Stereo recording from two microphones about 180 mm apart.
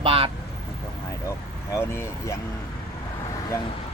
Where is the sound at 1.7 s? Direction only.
15° left (ahead or behind).